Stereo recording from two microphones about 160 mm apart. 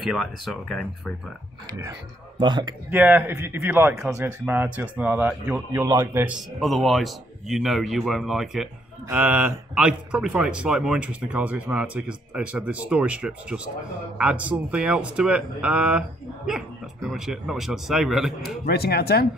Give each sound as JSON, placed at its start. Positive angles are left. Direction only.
{"t": 0.0, "sound": "speech", "side_deg": 0}
{"t": 1.7, "sound": "speech", "side_deg": -25}
{"t": 2.9, "sound": "speech", "side_deg": -10}
{"t": 6.6, "sound": "speech", "side_deg": 0}
{"t": 18.7, "sound": "speech", "side_deg": 80}